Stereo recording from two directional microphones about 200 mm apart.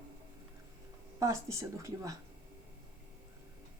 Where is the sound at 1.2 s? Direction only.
15° right (ahead or behind).